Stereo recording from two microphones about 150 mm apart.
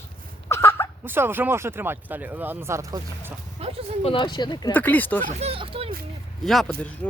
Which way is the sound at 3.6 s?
40° right (ahead or behind).